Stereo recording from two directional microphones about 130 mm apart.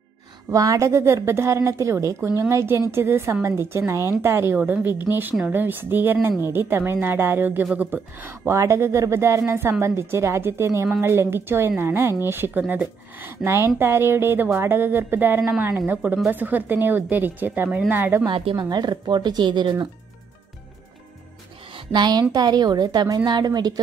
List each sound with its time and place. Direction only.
0.5 s a woman's voice: 25° right (ahead or behind)
18.2 s speech: 40° right (ahead or behind)
21.7 s speech: 35° right (ahead or behind)